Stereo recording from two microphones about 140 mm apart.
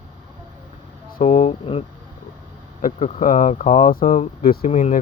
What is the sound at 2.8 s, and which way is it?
Speech, 55° left (ahead or behind).